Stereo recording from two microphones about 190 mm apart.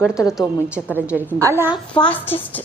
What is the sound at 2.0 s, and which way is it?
Speech, 10° left (ahead or behind).